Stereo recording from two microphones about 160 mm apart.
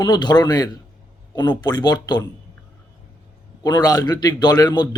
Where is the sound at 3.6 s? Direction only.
25° left (ahead or behind).